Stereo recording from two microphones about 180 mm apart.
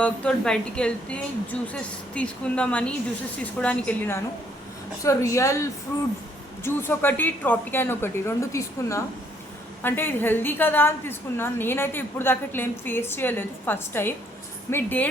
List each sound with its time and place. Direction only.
0.0 s a woman's voice: 5° left (ahead or behind)